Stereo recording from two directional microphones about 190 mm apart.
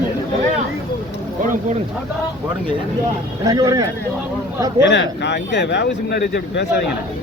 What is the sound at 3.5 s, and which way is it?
Speech, 20° right (ahead or behind).